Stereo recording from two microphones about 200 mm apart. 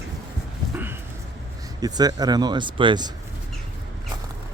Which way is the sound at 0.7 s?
10° right (ahead or behind).